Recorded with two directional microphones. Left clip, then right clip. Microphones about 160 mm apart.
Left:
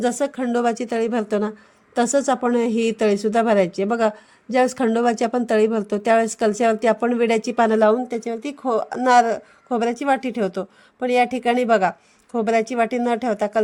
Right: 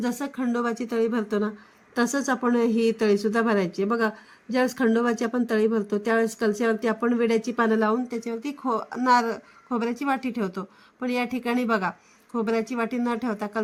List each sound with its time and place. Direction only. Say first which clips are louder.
0.0 s a woman's voice: left 8 dB; 35° left (ahead or behind)
2.0 s a woman's voice: left 6 dB; 25° left (ahead or behind)